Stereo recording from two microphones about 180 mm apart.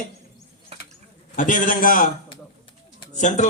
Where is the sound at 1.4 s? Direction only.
45° left (ahead or behind).